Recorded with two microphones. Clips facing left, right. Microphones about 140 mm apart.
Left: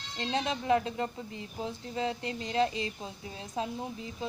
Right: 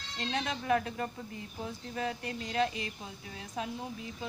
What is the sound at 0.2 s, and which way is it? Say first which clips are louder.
A woman's voice: left 3 dB; 25° left (ahead or behind).